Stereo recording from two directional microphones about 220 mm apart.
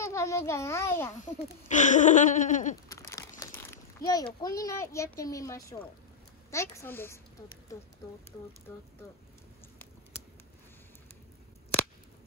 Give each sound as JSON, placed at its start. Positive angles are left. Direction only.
{"t": 0.0, "sound": "a child's voice", "side_deg": 15}
{"t": 1.2, "sound": "speech", "side_deg": 35}
{"t": 2.9, "sound": "crumpling", "side_deg": 15}
{"t": 4.6, "sound": "speech", "side_deg": 15}